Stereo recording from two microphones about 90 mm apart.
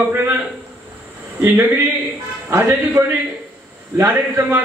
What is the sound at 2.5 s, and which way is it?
Speech, 25° right (ahead or behind).